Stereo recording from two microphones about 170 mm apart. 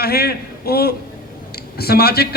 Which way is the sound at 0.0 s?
65° left (ahead or behind).